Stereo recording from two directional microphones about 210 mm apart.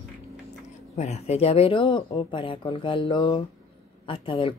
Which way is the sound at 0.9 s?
30° left (ahead or behind).